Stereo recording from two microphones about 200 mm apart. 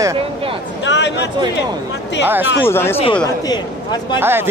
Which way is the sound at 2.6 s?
10° left (ahead or behind).